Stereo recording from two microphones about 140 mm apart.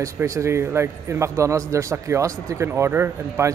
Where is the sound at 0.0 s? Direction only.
20° right (ahead or behind).